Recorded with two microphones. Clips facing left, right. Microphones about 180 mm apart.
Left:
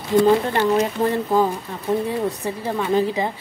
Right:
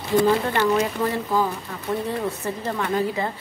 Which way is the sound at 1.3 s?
20° left (ahead or behind).